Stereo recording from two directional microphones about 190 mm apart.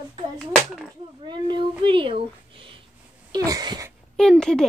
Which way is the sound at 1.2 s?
25° right (ahead or behind).